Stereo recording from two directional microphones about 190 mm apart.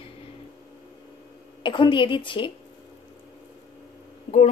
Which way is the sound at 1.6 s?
25° left (ahead or behind).